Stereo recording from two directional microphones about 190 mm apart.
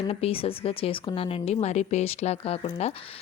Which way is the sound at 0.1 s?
30° left (ahead or behind).